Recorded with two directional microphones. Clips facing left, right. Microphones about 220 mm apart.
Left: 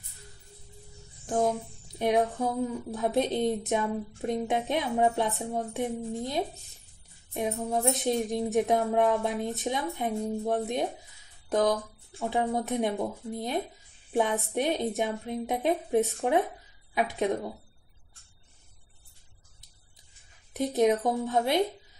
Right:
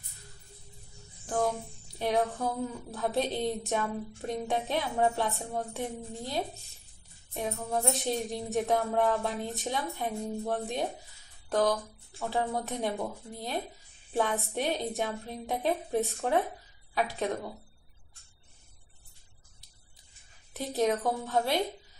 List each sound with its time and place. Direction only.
1.2 s music: 20° left (ahead or behind)
2.0 s a woman's voice: 20° left (ahead or behind)
20.5 s a woman's voice: 15° left (ahead or behind)